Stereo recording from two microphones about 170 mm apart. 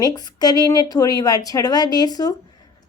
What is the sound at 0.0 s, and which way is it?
A woman's voice, 25° left (ahead or behind).